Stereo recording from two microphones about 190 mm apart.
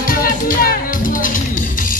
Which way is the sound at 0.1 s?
50° left (ahead or behind).